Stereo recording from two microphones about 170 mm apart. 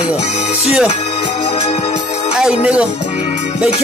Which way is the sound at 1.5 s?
30° left (ahead or behind).